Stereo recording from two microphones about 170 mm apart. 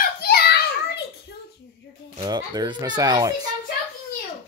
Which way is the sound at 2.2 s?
25° right (ahead or behind).